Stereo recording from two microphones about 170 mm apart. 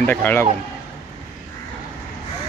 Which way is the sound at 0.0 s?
10° left (ahead or behind).